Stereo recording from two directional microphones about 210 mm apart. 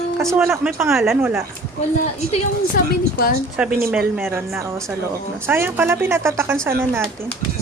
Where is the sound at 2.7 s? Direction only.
45° left (ahead or behind).